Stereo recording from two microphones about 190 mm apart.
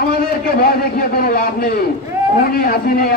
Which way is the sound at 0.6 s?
50° left (ahead or behind).